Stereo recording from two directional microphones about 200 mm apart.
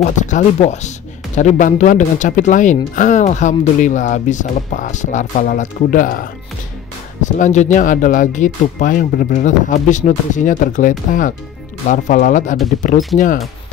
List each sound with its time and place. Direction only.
0.0 s speech: 35° left (ahead or behind)